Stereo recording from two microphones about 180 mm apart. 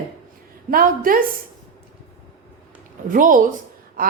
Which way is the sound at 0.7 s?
50° right (ahead or behind).